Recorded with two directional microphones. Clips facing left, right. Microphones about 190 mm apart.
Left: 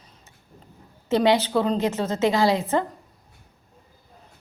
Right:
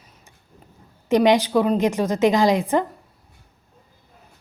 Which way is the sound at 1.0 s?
15° right (ahead or behind).